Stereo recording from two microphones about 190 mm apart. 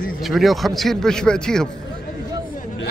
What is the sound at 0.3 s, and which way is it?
A man's voice, centre (ahead or behind).